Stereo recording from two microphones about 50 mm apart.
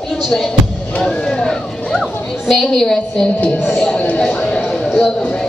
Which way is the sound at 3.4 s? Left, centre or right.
Left.